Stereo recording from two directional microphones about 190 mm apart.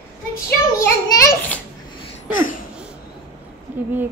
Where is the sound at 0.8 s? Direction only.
15° left (ahead or behind).